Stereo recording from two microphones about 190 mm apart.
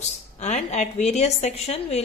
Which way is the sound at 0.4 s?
35° left (ahead or behind).